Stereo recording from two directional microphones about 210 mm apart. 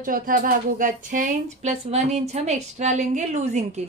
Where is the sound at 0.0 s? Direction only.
40° right (ahead or behind).